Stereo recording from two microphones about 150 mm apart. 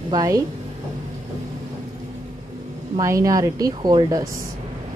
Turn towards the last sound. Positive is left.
turn(degrees=-25)  # may be behind; listen again after turning